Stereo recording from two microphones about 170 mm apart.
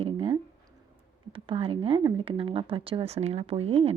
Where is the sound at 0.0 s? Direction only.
35° right (ahead or behind).